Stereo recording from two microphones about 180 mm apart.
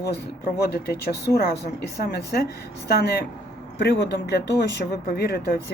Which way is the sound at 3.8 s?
70° left (ahead or behind).